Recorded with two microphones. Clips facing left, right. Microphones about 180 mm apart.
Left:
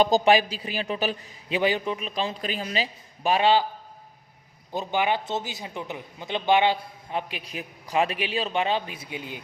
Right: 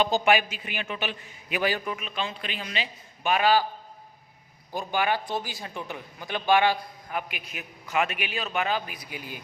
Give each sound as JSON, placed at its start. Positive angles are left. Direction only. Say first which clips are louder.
{"t": 0.0, "sound": "a man's voice", "louder": "left 3 dB", "side_deg": 35}
{"t": 4.7, "sound": "a man's voice", "louder": "left 2 dB", "side_deg": 20}